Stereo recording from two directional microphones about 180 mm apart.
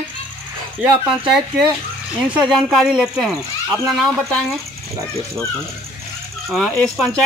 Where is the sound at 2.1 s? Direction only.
5° right (ahead or behind).